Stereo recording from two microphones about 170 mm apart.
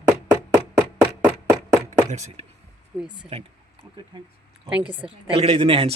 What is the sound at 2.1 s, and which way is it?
Speech, 40° right (ahead or behind).